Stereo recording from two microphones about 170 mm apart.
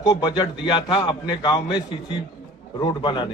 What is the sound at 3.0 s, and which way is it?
Speech, 30° left (ahead or behind).